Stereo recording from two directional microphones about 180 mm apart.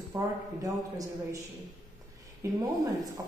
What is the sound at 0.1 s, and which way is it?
A man's voice, 20° right (ahead or behind).